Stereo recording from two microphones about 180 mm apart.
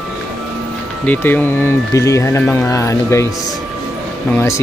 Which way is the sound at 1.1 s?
10° left (ahead or behind).